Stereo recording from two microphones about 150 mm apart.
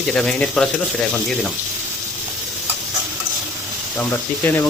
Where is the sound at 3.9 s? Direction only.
15° left (ahead or behind).